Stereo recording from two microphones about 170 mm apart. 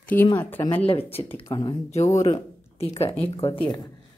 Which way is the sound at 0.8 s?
35° left (ahead or behind).